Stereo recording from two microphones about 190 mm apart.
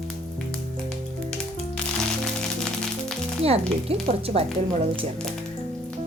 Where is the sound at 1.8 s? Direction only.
5° left (ahead or behind).